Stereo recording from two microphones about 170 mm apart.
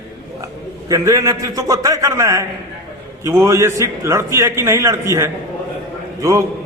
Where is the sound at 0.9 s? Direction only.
20° right (ahead or behind).